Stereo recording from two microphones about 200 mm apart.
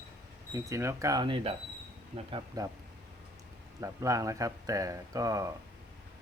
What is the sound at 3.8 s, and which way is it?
Speech, 15° right (ahead or behind).